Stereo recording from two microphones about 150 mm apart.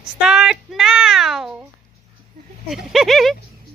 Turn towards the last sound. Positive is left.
turn(degrees=0)  # may be behind; listen again after turning